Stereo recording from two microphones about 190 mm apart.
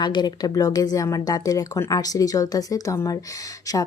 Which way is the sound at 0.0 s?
25° left (ahead or behind).